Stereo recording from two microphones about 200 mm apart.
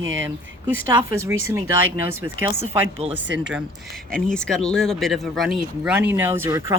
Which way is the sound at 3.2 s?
65° right (ahead or behind).